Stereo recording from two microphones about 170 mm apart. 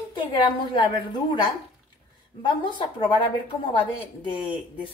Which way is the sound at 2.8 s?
30° left (ahead or behind).